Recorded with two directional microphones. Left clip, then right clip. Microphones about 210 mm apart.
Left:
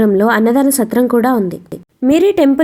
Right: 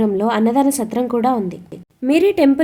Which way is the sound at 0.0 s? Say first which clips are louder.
Left 6 dB; 20° left (ahead or behind).